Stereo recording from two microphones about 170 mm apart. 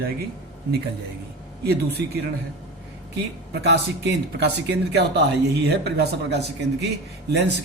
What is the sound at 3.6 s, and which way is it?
Speech, 85° right.